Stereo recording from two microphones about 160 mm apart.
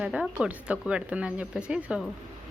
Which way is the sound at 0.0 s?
5° right (ahead or behind).